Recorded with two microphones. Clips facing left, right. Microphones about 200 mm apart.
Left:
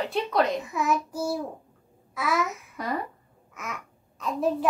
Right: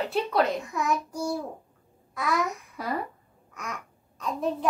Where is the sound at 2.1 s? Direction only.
Centre (ahead or behind).